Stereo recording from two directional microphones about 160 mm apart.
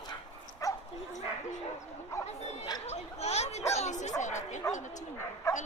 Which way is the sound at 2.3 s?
45° left (ahead or behind).